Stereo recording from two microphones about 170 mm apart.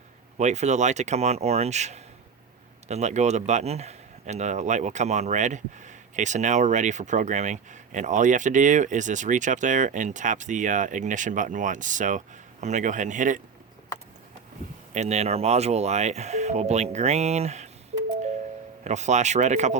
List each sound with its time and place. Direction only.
0.3 s speech: 40° right (ahead or behind)
14.9 s speech: 40° right (ahead or behind)
18.9 s speech: 45° right (ahead or behind)